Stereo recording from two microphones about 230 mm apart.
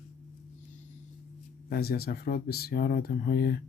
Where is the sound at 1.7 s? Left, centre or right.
Left.